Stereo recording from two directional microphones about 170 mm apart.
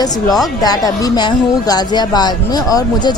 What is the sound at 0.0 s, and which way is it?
Speech, 20° left (ahead or behind).